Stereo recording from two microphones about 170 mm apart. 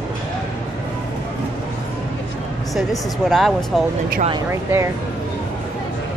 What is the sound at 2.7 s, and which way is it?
Speech, centre (ahead or behind).